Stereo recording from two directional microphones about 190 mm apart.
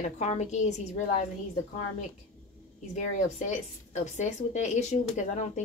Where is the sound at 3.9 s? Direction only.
40° left (ahead or behind).